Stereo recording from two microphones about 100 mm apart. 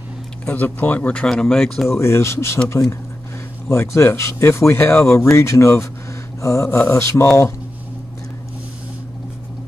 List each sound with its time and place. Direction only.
0.5 s speech: 20° left (ahead or behind)
1.9 s speech: 25° left (ahead or behind)